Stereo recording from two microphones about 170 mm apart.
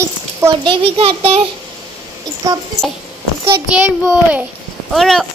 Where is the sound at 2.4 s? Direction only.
20° right (ahead or behind).